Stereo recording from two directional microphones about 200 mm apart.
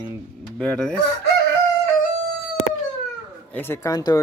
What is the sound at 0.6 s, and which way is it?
Speech, 5° left (ahead or behind).